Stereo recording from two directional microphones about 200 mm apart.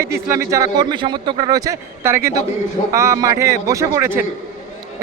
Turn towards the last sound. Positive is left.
turn(degrees=-10)  # may be behind; listen again after turning